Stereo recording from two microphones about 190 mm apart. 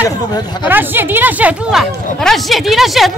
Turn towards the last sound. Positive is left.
turn(degrees=0)  # may be behind; listen again after turning